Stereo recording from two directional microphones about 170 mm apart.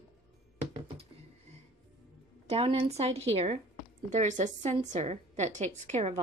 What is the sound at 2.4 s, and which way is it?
A woman's voice, 35° right (ahead or behind).